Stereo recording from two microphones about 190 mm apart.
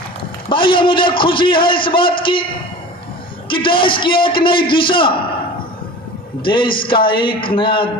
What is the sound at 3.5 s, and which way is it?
A man's voice, 25° left (ahead or behind).